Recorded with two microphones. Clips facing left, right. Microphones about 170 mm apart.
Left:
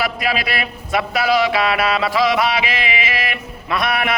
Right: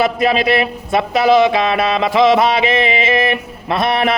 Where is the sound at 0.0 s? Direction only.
25° right (ahead or behind).